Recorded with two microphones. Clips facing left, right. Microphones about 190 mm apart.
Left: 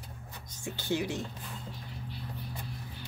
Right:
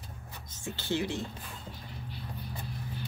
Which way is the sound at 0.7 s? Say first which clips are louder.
Even; 10° left (ahead or behind).